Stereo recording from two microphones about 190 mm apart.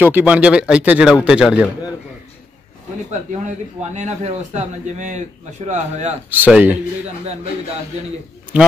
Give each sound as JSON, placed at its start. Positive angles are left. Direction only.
{"t": 0.0, "sound": "speech", "side_deg": -10}
{"t": 3.1, "sound": "a man's voice", "side_deg": -40}
{"t": 6.3, "sound": "speech", "side_deg": -10}
{"t": 8.5, "sound": "speech", "side_deg": -5}